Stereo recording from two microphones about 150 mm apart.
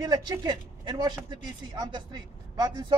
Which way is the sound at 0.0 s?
25° right (ahead or behind).